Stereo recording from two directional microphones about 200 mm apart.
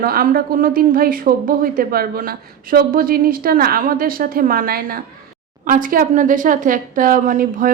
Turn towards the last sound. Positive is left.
turn(degrees=-45)  # may be behind; listen again after turning